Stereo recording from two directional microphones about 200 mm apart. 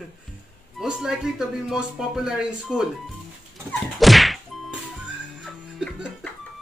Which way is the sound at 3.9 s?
Centre (ahead or behind).